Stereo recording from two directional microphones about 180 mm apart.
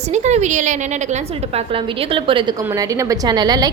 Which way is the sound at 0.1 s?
40° right (ahead or behind).